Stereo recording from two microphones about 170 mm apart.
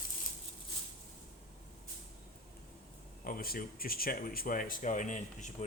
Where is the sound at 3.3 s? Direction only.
60° left (ahead or behind).